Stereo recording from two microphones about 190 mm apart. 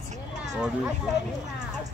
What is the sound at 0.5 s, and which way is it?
Speech, 5° right (ahead or behind).